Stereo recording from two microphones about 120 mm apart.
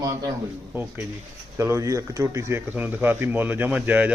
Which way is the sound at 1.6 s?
25° right (ahead or behind).